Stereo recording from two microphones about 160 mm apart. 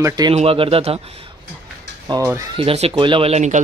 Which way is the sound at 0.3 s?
35° right (ahead or behind).